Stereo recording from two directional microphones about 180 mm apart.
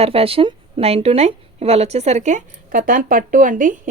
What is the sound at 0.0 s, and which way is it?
Speech, 30° right (ahead or behind).